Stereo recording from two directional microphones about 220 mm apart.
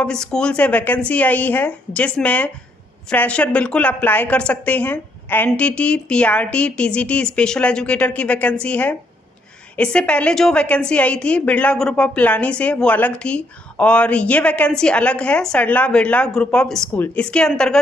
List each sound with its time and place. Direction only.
0.0 s a woman's voice: 5° left (ahead or behind)